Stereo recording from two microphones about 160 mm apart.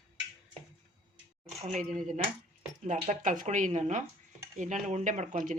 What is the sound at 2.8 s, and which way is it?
Speech, 50° right (ahead or behind).